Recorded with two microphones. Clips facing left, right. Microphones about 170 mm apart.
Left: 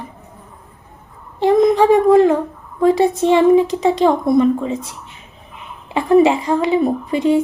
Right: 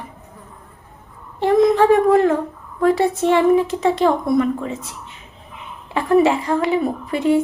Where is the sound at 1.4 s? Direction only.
15° left (ahead or behind).